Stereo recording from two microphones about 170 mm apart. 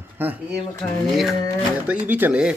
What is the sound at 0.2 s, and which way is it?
A man's voice, 10° right (ahead or behind).